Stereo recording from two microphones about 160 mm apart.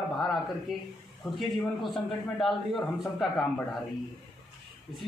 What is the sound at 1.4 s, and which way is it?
A man's voice, centre (ahead or behind).